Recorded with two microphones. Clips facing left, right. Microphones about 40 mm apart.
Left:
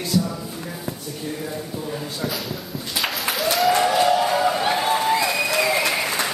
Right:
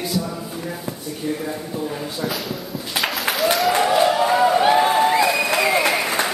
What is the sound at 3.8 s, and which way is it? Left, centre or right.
Music, right.